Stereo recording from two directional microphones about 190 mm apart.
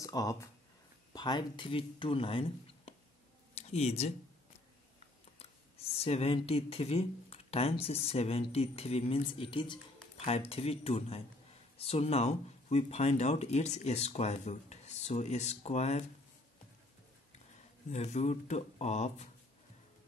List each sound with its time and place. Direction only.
0.0 s speech: 20° left (ahead or behind)
3.5 s a sound: 35° left (ahead or behind)
5.9 s speech: 30° left (ahead or behind)
17.9 s speech: 35° left (ahead or behind)